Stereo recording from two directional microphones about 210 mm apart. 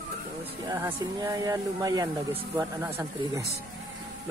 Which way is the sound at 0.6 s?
15° right (ahead or behind).